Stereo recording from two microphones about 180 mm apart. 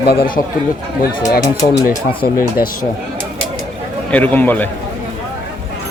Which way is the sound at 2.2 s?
55° left (ahead or behind).